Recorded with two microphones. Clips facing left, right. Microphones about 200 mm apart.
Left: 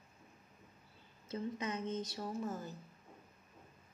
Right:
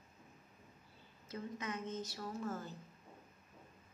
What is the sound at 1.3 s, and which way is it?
A woman's voice, 20° left (ahead or behind).